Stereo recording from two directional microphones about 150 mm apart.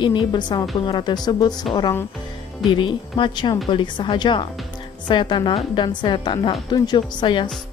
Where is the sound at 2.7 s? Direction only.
30° left (ahead or behind).